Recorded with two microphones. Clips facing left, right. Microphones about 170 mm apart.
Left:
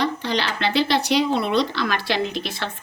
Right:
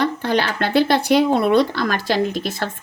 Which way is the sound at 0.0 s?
55° right (ahead or behind).